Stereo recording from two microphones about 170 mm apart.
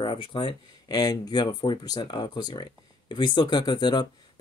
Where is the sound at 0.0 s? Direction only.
30° left (ahead or behind).